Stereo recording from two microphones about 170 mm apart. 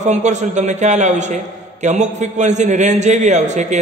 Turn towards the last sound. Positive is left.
turn(degrees=-45)  # may be behind; listen again after turning